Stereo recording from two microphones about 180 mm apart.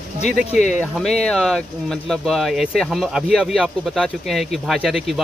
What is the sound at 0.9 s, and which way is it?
Speech, 5° left (ahead or behind).